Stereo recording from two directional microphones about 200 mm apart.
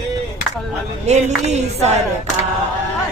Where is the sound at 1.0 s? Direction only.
35° right (ahead or behind).